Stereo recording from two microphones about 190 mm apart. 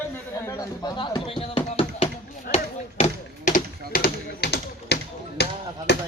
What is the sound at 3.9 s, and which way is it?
Speech, 55° left (ahead or behind).